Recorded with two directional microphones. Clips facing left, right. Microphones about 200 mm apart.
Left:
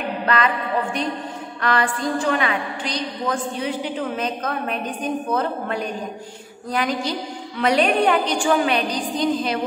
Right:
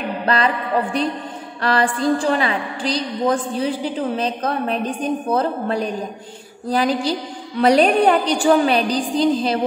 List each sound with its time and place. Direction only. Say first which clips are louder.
0.3 s a woman's voice: right 2 dB; 35° right (ahead or behind)